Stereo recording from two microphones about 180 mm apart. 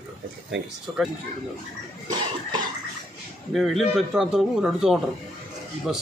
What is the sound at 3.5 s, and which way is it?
A man's voice, centre (ahead or behind).